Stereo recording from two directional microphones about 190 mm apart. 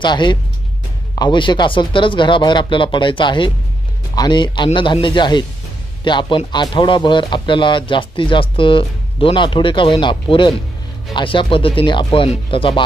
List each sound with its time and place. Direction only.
0.0 s speech: 25° left (ahead or behind)